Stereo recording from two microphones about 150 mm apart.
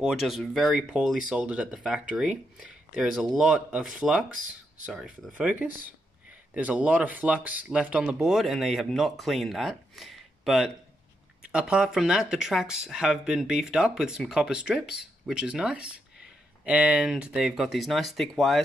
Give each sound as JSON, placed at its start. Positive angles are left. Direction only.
{"t": 0.0, "sound": "speech", "side_deg": 0}